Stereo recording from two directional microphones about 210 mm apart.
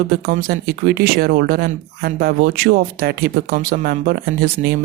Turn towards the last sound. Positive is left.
turn(degrees=-45)  # may be behind; listen again after turning